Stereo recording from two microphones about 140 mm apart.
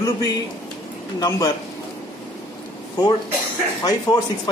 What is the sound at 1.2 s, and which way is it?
Speech, 25° left (ahead or behind).